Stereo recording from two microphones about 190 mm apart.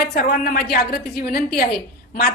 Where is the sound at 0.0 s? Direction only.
55° left (ahead or behind).